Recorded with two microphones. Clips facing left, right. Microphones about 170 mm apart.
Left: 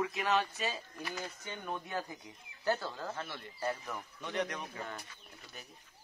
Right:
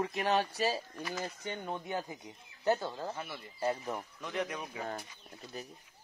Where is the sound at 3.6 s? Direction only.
30° right (ahead or behind).